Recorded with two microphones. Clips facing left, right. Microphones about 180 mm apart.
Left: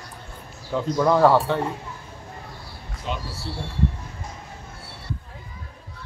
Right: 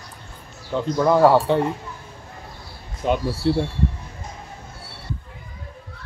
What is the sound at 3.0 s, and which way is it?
Speech, 50° right (ahead or behind).